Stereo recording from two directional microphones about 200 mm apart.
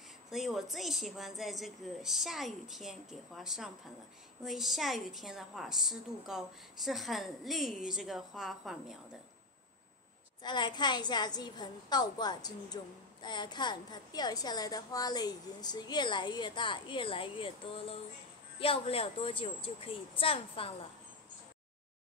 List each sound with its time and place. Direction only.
0.3 s a woman's voice: centre (ahead or behind)
10.4 s a woman's voice: 20° left (ahead or behind)